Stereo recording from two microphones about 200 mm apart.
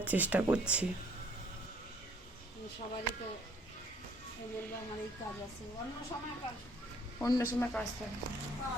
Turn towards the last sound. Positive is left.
turn(degrees=15)  # may be behind; listen again after turning